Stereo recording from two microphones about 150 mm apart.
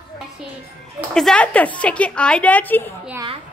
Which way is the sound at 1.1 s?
5° left (ahead or behind).